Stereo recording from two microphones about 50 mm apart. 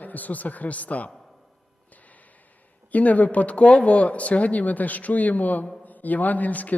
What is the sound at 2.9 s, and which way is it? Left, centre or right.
A man's voice, left.